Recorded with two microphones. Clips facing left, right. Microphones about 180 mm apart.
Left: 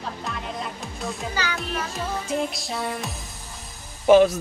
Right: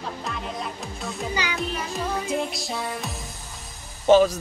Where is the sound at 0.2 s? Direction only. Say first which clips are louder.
Even; centre (ahead or behind).